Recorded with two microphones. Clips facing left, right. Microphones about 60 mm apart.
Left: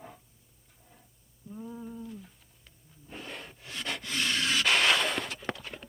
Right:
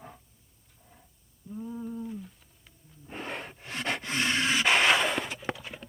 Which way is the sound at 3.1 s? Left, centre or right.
Right.